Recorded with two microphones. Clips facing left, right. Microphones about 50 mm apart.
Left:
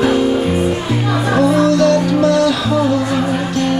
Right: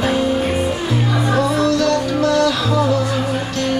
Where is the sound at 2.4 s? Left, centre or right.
Centre.